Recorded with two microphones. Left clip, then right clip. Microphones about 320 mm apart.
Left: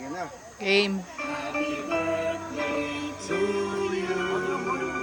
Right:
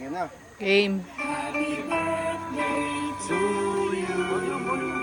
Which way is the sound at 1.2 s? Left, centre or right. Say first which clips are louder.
Right 1 dB; right.